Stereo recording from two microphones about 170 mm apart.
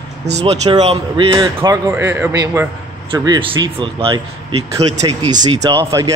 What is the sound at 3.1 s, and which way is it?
Speech, 25° right (ahead or behind).